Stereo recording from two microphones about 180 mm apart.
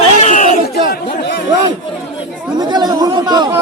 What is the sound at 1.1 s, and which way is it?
Speech, 65° left (ahead or behind).